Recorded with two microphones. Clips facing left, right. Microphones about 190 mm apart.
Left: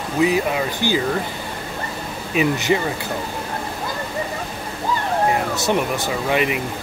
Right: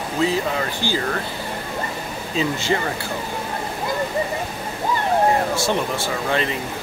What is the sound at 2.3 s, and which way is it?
Speech, 15° left (ahead or behind).